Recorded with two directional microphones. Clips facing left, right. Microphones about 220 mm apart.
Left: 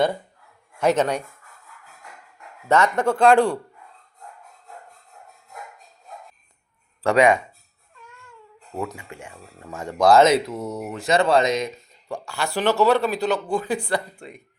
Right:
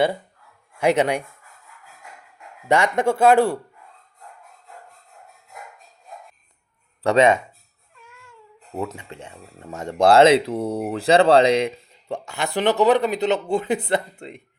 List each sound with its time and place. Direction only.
0.8 s speech: 10° right (ahead or behind)
2.6 s speech: 15° right (ahead or behind)
7.0 s speech: 20° right (ahead or behind)
8.8 s speech: 25° right (ahead or behind)